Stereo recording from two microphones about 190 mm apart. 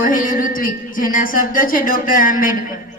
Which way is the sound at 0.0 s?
45° left (ahead or behind).